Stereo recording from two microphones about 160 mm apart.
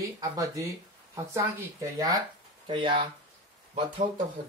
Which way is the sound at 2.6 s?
35° right (ahead or behind).